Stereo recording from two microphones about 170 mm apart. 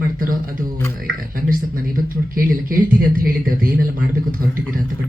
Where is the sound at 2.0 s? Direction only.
55° right (ahead or behind).